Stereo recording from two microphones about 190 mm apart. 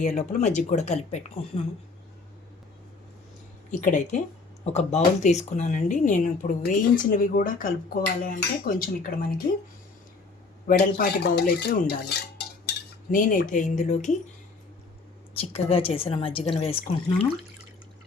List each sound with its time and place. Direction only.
0.0 s speech: 40° left (ahead or behind)
3.7 s speech: 40° left (ahead or behind)
10.7 s speech: 55° left (ahead or behind)
12.6 s cutlery: 45° left (ahead or behind)
15.4 s a woman's voice: 30° left (ahead or behind)